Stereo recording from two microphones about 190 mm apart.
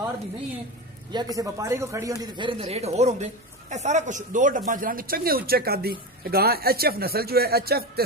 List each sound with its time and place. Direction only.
1.1 s speech: 20° right (ahead or behind); by 8.0 s 55° right (ahead or behind)